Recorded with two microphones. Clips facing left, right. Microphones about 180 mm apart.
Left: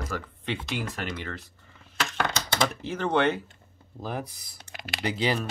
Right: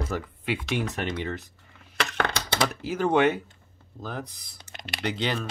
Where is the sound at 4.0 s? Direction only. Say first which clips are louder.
Left 2 dB; 10° left (ahead or behind).